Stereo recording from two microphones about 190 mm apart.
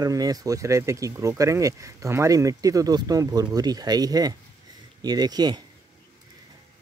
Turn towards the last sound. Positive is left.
turn(degrees=-20)  # may be behind; listen again after turning